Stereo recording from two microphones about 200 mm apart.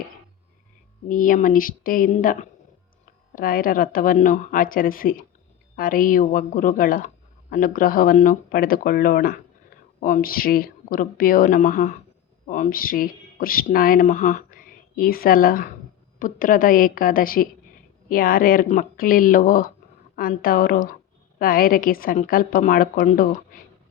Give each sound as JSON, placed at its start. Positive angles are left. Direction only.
{"t": 1.0, "sound": "a woman's voice", "side_deg": 40}